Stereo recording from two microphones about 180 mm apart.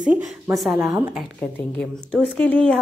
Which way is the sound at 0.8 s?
15° right (ahead or behind).